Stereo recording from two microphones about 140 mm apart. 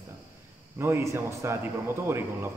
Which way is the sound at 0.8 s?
20° right (ahead or behind).